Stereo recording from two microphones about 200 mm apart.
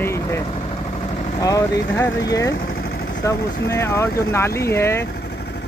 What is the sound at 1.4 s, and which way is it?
Speech, 15° left (ahead or behind).